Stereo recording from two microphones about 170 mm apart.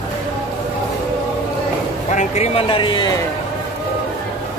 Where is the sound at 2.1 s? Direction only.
40° left (ahead or behind).